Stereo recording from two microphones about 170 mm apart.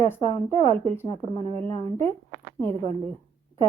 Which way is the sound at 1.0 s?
25° left (ahead or behind).